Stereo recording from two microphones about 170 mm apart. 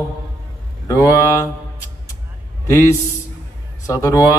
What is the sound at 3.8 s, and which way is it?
Speech, 20° left (ahead or behind).